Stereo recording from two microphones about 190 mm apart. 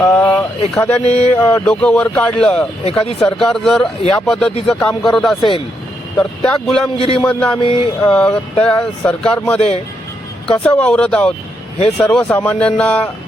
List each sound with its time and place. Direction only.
0.0 s a sound: 5° left (ahead or behind)
0.7 s speech: 5° left (ahead or behind)
5.4 s a man's voice: 25° left (ahead or behind)
6.1 s speech: 5° left (ahead or behind)
6.9 s a man's voice: 30° left (ahead or behind)
7.3 s speech: 5° left (ahead or behind)
7.6 s a man's voice: 30° left (ahead or behind)
8.0 s speech: 5° left (ahead or behind)